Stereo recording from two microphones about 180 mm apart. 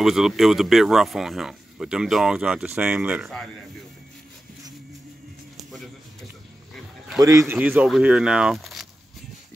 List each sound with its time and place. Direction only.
0.0 s speech: centre (ahead or behind)
7.2 s speech: 20° right (ahead or behind); by 8.8 s centre (ahead or behind)